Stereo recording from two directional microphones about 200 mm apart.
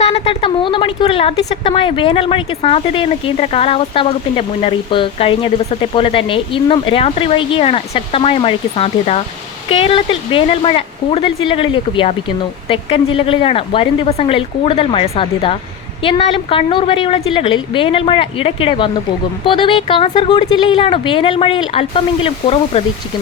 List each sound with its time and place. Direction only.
0.0 s speech: 30° left (ahead or behind)